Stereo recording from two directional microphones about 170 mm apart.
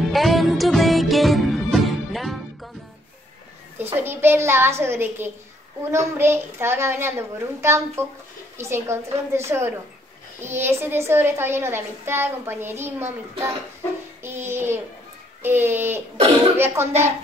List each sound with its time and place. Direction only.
0.0 s music: centre (ahead or behind)
3.7 s a child's voice: 10° right (ahead or behind)